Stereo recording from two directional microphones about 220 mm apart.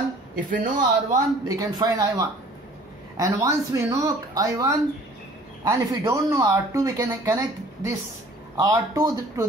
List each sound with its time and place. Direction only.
0.5 s a man's voice: 35° right (ahead or behind)
1.6 s speech: 15° right (ahead or behind)